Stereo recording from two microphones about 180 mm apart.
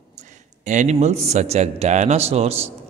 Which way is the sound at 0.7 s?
40° right (ahead or behind).